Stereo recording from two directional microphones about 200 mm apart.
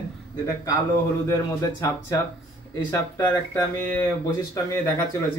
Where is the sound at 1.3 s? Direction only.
15° left (ahead or behind).